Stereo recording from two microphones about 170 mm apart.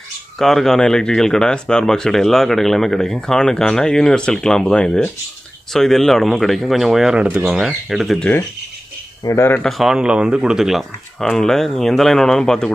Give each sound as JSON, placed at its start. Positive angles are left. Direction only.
{"t": 0.4, "sound": "speech", "side_deg": 0}
{"t": 9.2, "sound": "speech", "side_deg": 15}
{"t": 9.6, "sound": "speech", "side_deg": 0}